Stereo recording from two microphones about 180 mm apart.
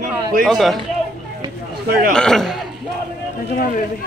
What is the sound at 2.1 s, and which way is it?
Speech, 5° left (ahead or behind).